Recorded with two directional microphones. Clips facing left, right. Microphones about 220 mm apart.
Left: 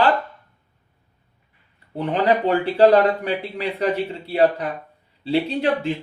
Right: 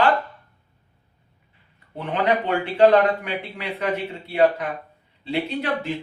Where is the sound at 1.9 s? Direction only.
35° left (ahead or behind).